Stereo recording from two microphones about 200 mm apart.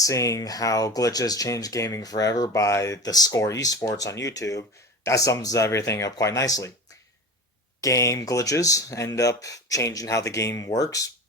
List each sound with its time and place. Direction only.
0.0 s speech: 15° left (ahead or behind)
7.8 s speech: 15° left (ahead or behind)